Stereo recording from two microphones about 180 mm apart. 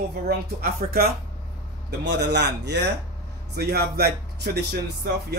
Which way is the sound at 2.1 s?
75° right (ahead or behind).